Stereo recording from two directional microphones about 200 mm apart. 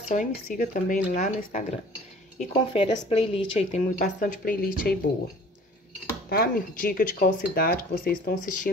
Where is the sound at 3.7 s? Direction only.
45° left (ahead or behind).